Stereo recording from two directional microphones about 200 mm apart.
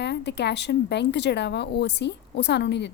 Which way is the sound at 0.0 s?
60° left (ahead or behind).